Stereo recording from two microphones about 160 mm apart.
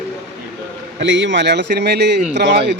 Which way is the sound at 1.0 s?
90° right.